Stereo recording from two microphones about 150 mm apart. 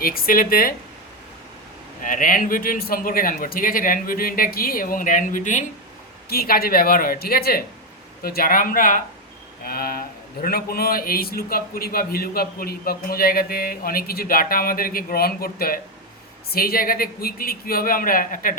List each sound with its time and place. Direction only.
0.0 s a man's voice: 75° left (ahead or behind)
2.0 s a man's voice: 65° left (ahead or behind)
6.2 s a man's voice: 90° left; by 9.0 s 65° left (ahead or behind)
9.6 s a man's voice: 80° left; by 18.5 s 65° left (ahead or behind)